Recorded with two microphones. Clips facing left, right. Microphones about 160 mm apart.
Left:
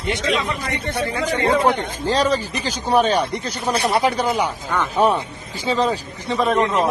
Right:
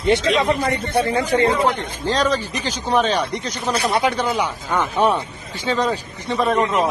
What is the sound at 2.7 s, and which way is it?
A man's voice, 10° left (ahead or behind).